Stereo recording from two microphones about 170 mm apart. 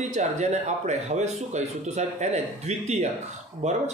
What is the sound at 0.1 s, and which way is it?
Speech, 45° right (ahead or behind).